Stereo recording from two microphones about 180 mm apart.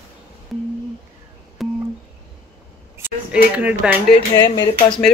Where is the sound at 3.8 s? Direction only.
5° right (ahead or behind).